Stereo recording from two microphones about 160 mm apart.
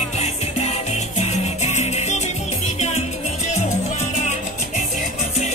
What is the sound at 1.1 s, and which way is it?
Music, 45° left (ahead or behind).